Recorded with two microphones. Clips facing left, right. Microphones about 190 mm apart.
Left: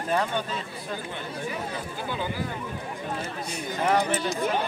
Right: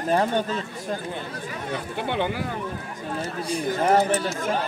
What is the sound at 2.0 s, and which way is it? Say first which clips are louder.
Speech: right 6 dB; 70° right (ahead or behind).